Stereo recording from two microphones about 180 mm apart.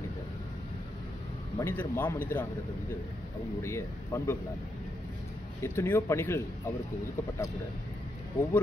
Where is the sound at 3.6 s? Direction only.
15° left (ahead or behind).